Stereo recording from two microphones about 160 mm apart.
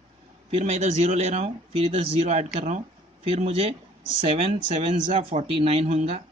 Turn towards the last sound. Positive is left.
turn(degrees=-40)  # may be behind; listen again after turning